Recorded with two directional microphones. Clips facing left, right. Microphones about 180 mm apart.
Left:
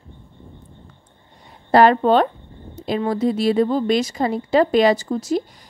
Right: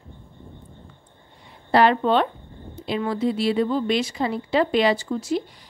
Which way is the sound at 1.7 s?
45° left (ahead or behind).